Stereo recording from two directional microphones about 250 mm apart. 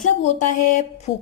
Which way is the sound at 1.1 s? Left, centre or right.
Left.